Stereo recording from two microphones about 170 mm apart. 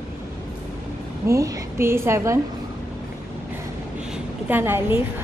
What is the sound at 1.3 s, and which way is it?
A woman's voice, 20° right (ahead or behind).